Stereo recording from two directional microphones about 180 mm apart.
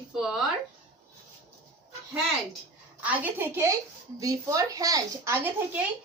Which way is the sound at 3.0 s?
10° right (ahead or behind).